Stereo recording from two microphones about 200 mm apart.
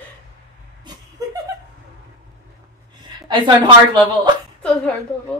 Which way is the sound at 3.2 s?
20° right (ahead or behind).